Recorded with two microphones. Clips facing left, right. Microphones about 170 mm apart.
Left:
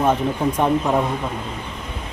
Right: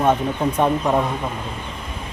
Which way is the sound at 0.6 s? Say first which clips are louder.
Even; 5° left (ahead or behind).